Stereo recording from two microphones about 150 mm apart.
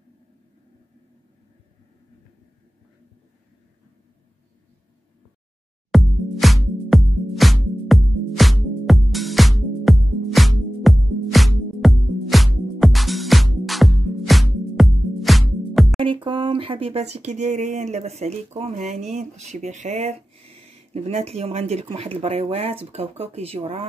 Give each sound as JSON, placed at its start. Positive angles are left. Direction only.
{"t": 5.9, "sound": "music", "side_deg": 0}
{"t": 16.0, "sound": "speech", "side_deg": -35}